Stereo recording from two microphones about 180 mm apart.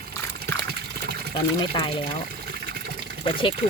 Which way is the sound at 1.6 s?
25° left (ahead or behind).